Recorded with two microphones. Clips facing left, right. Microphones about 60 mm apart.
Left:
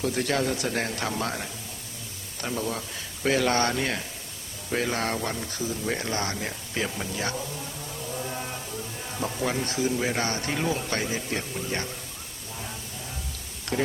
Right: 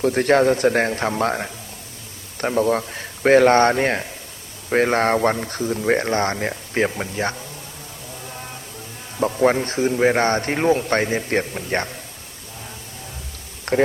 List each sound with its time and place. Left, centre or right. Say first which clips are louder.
0.0 s speech: right 10 dB; right
9.2 s speech: right 11 dB; right
13.7 s speech: right 9 dB; right